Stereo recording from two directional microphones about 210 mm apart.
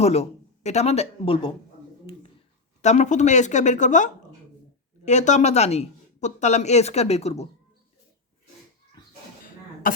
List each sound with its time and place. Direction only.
0.0 s speech: 30° left (ahead or behind)
2.8 s speech: 35° left (ahead or behind)
9.8 s cough: 40° left (ahead or behind)